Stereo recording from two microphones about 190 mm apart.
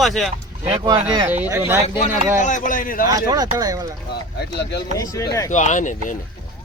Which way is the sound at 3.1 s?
20° right (ahead or behind).